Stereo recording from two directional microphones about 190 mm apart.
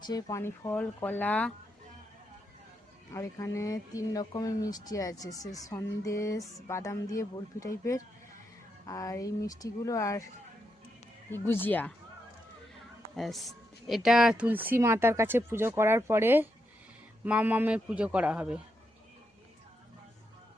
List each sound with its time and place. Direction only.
0.0 s speech: 20° left (ahead or behind)
3.1 s speech: 15° left (ahead or behind)
11.3 s speech: 10° left (ahead or behind)
13.1 s speech: centre (ahead or behind)